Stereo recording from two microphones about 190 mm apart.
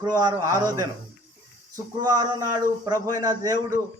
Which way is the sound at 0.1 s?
20° right (ahead or behind).